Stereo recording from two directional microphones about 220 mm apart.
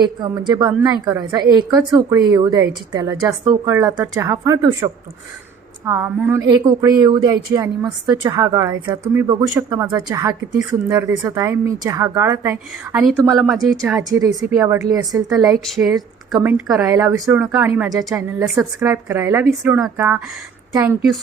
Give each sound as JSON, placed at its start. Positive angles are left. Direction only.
{"t": 0.0, "sound": "a woman's voice", "side_deg": -20}
{"t": 14.1, "sound": "a woman's voice", "side_deg": -15}
{"t": 15.6, "sound": "speech", "side_deg": 0}
{"t": 16.8, "sound": "a woman's voice", "side_deg": -15}